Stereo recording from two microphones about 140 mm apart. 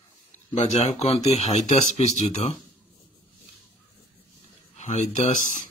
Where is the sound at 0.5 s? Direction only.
55° left (ahead or behind).